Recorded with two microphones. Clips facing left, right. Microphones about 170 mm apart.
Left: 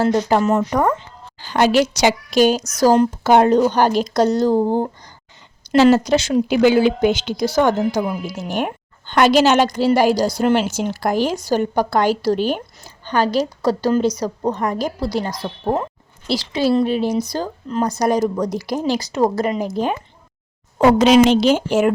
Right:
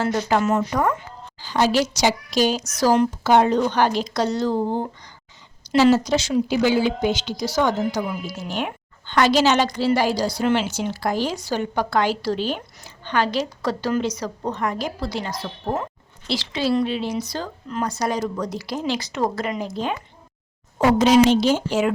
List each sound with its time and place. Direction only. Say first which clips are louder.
0.3 s a woman's voice: left 3 dB; 35° left (ahead or behind)
1.4 s a woman's voice: left 4 dB; 60° left (ahead or behind)
5.7 s a woman's voice: left 4 dB; 55° left (ahead or behind); by 19.6 s 35° left (ahead or behind)
20.7 s a woman's voice: left 3 dB; 75° left (ahead or behind); by 21.9 s 50° left (ahead or behind)